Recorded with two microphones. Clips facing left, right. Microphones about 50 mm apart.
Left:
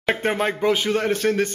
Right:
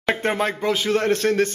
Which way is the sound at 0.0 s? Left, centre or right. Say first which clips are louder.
Even; centre.